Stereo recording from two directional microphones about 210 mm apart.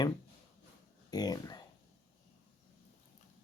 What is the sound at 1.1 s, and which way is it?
Speech, 20° left (ahead or behind).